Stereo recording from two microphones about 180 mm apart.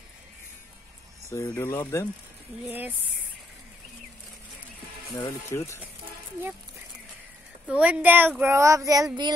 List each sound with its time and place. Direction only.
1.3 s speech: 15° left (ahead or behind)
2.6 s a woman's voice: 10° right (ahead or behind)
5.1 s speech: 15° left (ahead or behind)
7.6 s a woman's voice: 5° right (ahead or behind); by 9.3 s 20° right (ahead or behind)